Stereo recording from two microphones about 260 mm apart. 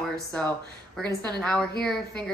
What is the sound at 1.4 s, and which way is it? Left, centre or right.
Speech, centre.